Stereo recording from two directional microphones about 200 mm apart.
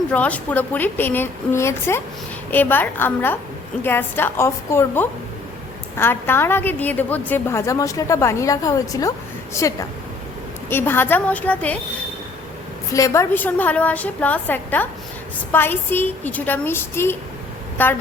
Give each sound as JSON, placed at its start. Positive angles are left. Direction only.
{"t": 0.1, "sound": "a woman's voice", "side_deg": 5}
{"t": 12.9, "sound": "a woman's voice", "side_deg": 15}